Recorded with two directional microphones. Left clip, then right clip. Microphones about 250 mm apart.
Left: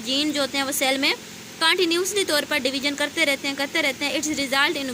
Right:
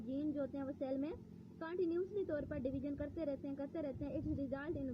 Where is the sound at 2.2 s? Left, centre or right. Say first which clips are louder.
Left 19 dB; right.